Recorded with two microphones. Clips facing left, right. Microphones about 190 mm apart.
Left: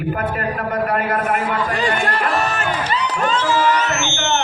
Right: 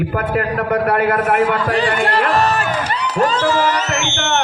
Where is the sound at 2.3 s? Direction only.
35° right (ahead or behind).